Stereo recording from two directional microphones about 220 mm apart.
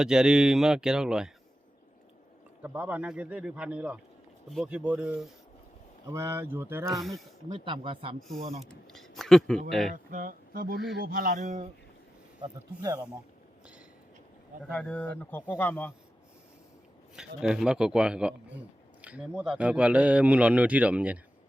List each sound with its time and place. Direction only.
0.0 s a man's voice: 5° right (ahead or behind)
2.6 s a man's voice: 5° right (ahead or behind)
7.5 s speech: 20° right (ahead or behind)
8.9 s speech: centre (ahead or behind)
9.9 s speech: 40° right (ahead or behind)
12.4 s speech: 15° right (ahead or behind)
14.6 s a man's voice: 5° left (ahead or behind)
17.2 s a man's voice: 5° right (ahead or behind)